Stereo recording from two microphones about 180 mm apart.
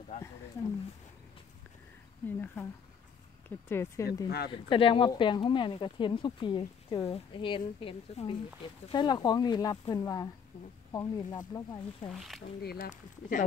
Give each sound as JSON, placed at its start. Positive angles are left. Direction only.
{"t": 2.2, "sound": "speech", "side_deg": 10}
{"t": 4.6, "sound": "speech", "side_deg": 30}
{"t": 12.6, "sound": "speech", "side_deg": 50}